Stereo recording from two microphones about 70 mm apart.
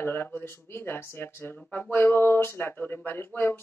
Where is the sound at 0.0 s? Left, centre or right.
Left.